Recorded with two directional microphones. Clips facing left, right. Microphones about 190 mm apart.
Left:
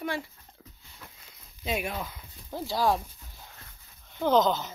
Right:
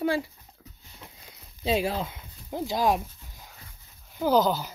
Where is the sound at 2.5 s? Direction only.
20° right (ahead or behind).